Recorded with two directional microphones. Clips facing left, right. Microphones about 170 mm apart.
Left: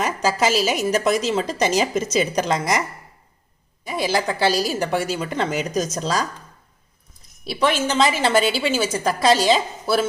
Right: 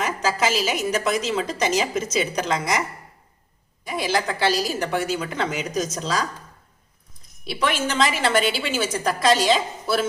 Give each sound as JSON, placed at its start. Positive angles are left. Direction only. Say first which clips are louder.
{"t": 0.0, "sound": "a woman's voice", "louder": "left 2 dB", "side_deg": 40}
{"t": 4.1, "sound": "a woman's voice", "louder": "left 2 dB", "side_deg": 35}
{"t": 7.4, "sound": "a woman's voice", "louder": "left 3 dB", "side_deg": 30}